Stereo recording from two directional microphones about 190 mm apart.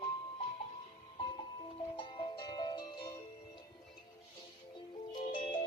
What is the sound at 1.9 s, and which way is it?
Music, 25° left (ahead or behind).